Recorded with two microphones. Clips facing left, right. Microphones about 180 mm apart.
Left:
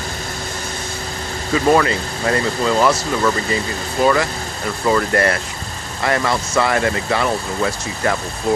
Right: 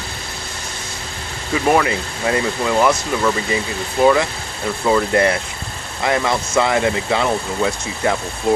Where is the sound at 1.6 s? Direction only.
10° right (ahead or behind).